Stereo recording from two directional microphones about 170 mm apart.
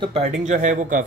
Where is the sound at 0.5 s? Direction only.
50° right (ahead or behind).